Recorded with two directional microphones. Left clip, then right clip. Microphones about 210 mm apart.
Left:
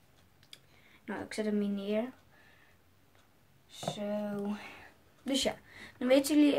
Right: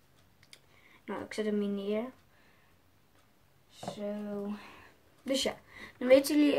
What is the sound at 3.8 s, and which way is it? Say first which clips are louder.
Speech: left 3 dB; 30° left (ahead or behind).